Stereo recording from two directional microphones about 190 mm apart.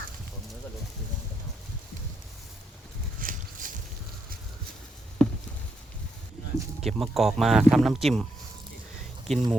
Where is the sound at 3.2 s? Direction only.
45° right (ahead or behind).